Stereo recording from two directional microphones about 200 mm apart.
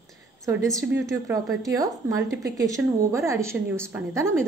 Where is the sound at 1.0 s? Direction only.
15° right (ahead or behind).